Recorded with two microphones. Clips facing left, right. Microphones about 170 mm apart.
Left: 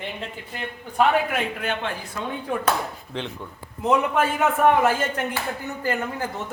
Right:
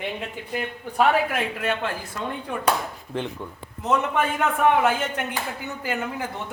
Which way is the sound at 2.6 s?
10° right (ahead or behind).